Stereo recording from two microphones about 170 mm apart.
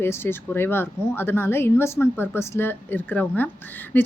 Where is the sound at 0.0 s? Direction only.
15° left (ahead or behind).